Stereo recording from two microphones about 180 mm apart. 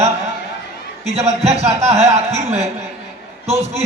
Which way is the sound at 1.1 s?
35° right (ahead or behind).